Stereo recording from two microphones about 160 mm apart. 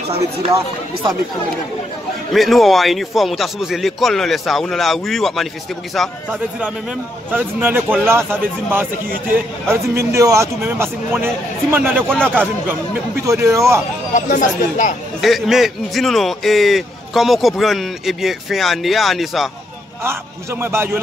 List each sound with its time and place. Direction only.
2.3 s a man's voice: centre (ahead or behind)
12.0 s a man's voice: 5° left (ahead or behind)
13.2 s a man's voice: 20° right (ahead or behind)
14.1 s speech: 50° left (ahead or behind)
15.2 s a man's voice: centre (ahead or behind)
20.0 s speech: 15° right (ahead or behind)